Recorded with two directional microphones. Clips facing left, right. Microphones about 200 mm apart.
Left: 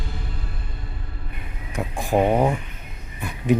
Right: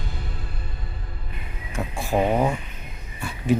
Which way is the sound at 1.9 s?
15° left (ahead or behind).